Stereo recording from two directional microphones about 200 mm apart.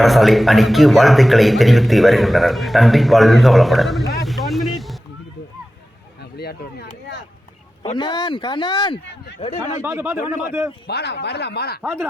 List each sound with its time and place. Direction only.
0.0 s a man's voice: centre (ahead or behind)
4.1 s vehicle: centre (ahead or behind)
6.3 s a sound: 50° left (ahead or behind)
7.9 s a man's voice: 20° left (ahead or behind)
9.8 s a man's voice: 10° right (ahead or behind)
10.8 s speech: 55° left (ahead or behind)
11.8 s a man's voice: 10° right (ahead or behind)